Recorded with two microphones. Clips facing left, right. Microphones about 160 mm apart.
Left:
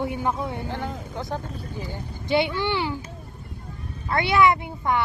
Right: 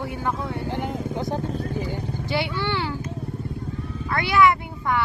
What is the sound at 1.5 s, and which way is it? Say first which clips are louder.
Speech: right 7 dB; 60° right (ahead or behind).